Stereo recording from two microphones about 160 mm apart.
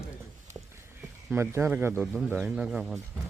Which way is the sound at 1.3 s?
15° right (ahead or behind).